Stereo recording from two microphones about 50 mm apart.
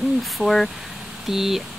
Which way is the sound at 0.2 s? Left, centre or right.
Centre.